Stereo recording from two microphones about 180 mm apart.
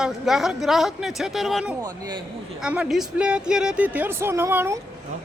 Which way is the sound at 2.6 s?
5° right (ahead or behind).